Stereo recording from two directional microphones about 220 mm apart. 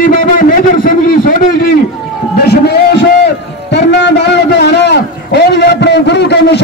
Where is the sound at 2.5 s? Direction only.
50° left (ahead or behind).